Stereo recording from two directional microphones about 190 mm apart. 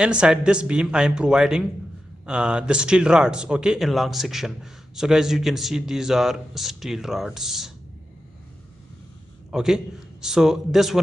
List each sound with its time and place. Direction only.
0.0 s a man's voice: 5° right (ahead or behind)
9.5 s a man's voice: centre (ahead or behind)